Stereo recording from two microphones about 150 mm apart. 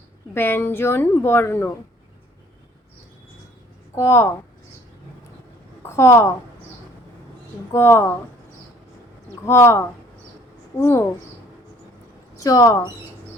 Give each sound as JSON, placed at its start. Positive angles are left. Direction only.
{"t": 0.3, "sound": "a woman's voice", "side_deg": 15}
{"t": 3.9, "sound": "a woman's voice", "side_deg": 15}
{"t": 5.8, "sound": "a woman's voice", "side_deg": 15}
{"t": 7.7, "sound": "a woman's voice", "side_deg": 15}
{"t": 9.5, "sound": "a woman's voice", "side_deg": 15}
{"t": 12.4, "sound": "speech", "side_deg": 20}